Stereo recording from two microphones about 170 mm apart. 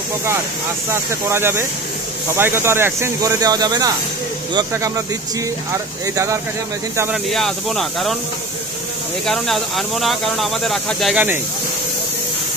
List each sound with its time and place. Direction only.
0.8 s speech: 15° right (ahead or behind)
6.1 s speech: 20° right (ahead or behind)
7.2 s speech: centre (ahead or behind)
9.2 s speech: centre (ahead or behind)